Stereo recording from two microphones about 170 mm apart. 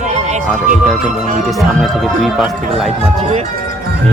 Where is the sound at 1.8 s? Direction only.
Centre (ahead or behind).